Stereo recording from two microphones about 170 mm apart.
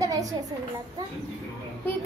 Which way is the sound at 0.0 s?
20° right (ahead or behind).